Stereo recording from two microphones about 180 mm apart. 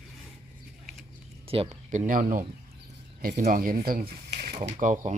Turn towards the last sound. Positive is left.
turn(degrees=-45)  # may be behind; listen again after turning